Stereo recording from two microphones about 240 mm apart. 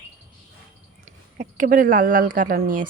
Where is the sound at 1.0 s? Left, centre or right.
Right.